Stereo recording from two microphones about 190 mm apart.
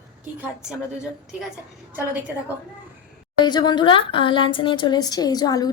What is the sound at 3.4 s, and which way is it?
Speech, 20° left (ahead or behind).